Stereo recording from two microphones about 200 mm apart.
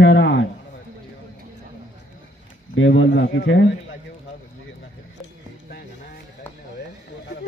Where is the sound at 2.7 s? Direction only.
65° left (ahead or behind).